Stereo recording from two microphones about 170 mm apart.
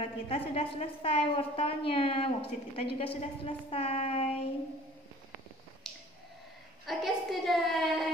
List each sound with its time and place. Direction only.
0.0 s a woman's voice: 35° left (ahead or behind)
5.9 s a sound: centre (ahead or behind)
6.9 s a woman's voice: centre (ahead or behind)